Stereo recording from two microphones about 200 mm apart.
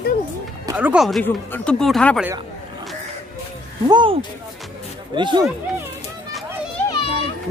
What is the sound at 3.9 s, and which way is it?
A man's voice, 25° right (ahead or behind).